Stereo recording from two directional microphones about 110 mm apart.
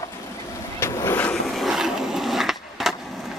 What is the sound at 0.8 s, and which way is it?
Boat, 25° left (ahead or behind).